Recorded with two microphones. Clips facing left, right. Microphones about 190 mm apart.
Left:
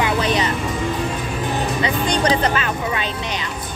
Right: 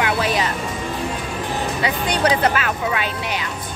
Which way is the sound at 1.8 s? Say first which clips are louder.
Right 1 dB; 5° right (ahead or behind).